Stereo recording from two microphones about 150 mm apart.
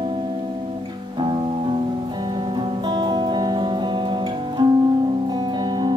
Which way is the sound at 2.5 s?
30° right (ahead or behind).